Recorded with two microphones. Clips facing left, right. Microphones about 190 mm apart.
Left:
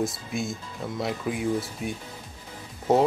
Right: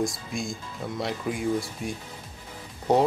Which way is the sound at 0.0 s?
5° left (ahead or behind).